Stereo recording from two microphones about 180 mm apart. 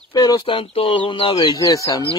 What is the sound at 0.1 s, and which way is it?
Speech, 20° left (ahead or behind).